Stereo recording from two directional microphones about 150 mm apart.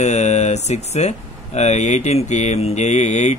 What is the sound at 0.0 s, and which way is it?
Speech, 50° left (ahead or behind).